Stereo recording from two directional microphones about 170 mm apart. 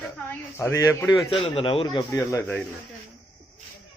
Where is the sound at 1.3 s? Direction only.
35° left (ahead or behind); by 2.6 s 15° left (ahead or behind).